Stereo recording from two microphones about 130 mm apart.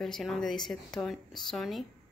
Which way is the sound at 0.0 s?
Centre (ahead or behind).